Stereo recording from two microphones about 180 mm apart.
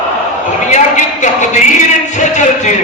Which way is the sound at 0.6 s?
40° left (ahead or behind).